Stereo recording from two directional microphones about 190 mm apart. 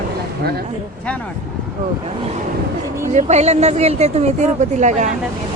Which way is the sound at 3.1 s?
35° right (ahead or behind).